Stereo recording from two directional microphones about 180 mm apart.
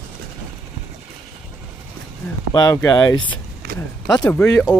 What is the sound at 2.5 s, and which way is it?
Speech, 20° left (ahead or behind).